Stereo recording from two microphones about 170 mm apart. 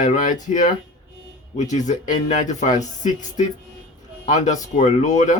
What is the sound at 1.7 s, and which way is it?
Speech, 45° left (ahead or behind).